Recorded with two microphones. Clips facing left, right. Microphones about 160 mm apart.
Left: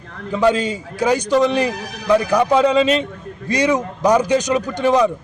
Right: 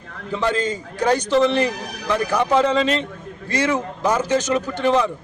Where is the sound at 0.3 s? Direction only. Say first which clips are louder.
Left 5 dB; 10° left (ahead or behind).